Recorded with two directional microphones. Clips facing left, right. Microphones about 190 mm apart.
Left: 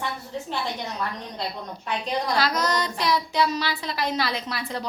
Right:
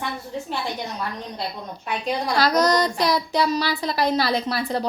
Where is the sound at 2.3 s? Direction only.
40° right (ahead or behind).